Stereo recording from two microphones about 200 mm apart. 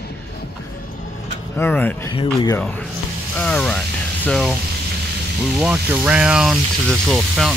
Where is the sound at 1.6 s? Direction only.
10° left (ahead or behind).